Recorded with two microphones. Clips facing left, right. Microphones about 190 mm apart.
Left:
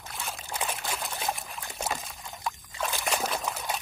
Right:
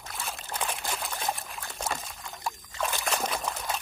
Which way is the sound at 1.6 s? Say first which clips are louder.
Left 1 dB; 5° left (ahead or behind).